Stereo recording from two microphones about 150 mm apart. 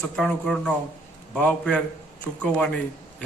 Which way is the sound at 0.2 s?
5° left (ahead or behind).